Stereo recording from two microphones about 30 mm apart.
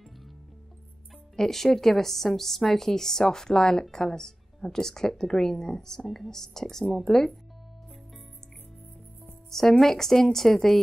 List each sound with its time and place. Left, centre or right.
1.3 s a woman's voice: centre
9.5 s a woman's voice: centre